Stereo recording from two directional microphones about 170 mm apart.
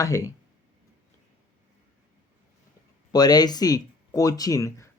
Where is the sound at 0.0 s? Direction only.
15° left (ahead or behind).